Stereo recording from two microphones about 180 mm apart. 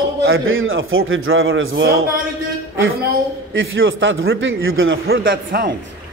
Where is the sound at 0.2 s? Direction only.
90° right.